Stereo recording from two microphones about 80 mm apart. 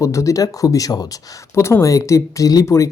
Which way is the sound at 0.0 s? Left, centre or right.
Left.